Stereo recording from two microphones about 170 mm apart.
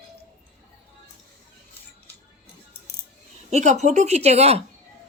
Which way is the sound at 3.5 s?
45° right (ahead or behind).